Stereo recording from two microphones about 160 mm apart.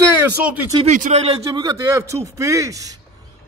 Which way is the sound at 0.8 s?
45° right (ahead or behind).